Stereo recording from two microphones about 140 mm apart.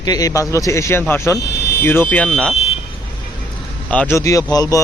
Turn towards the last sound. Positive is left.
turn(degrees=25)  # may be behind; listen again after turning